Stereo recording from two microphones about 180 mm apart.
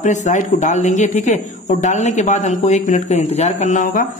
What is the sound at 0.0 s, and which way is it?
Speech, 40° left (ahead or behind).